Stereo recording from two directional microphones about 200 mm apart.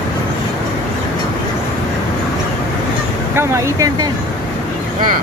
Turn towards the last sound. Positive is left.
turn(degrees=-15)  # may be behind; listen again after turning